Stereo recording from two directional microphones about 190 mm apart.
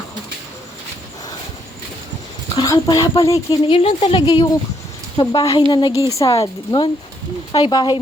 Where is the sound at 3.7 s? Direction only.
30° left (ahead or behind).